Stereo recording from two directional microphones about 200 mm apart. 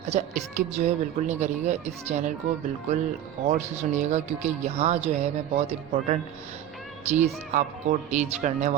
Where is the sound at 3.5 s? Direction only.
35° right (ahead or behind).